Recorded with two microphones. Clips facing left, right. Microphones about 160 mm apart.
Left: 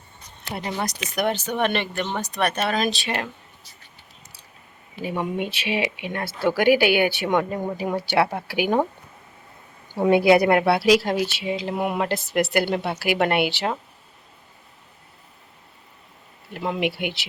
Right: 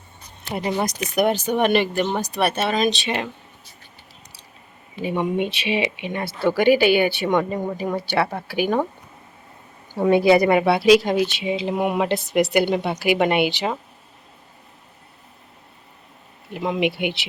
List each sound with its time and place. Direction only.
0.5 s a woman's voice: 15° right (ahead or behind); by 3.2 s centre (ahead or behind)
4.9 s speech: 5° left (ahead or behind)
10.0 s speech: 10° left (ahead or behind)
16.6 s a woman's voice: 10° right (ahead or behind)
16.9 s speech: 55° right (ahead or behind)